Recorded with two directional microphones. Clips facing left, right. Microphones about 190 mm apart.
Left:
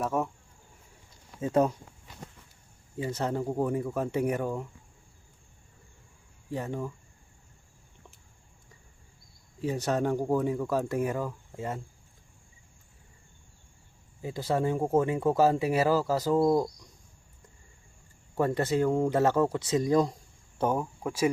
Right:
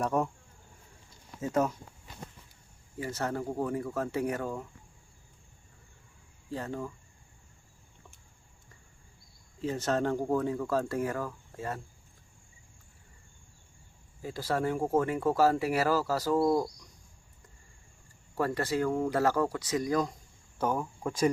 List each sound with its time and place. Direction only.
0.0 s speech: centre (ahead or behind)
1.4 s speech: 30° left (ahead or behind)
3.0 s speech: 20° left (ahead or behind)
6.5 s speech: 15° left (ahead or behind)
9.6 s speech: 15° left (ahead or behind)
14.2 s speech: 20° left (ahead or behind)
18.3 s speech: 20° left (ahead or behind)
21.0 s speech: 10° left (ahead or behind)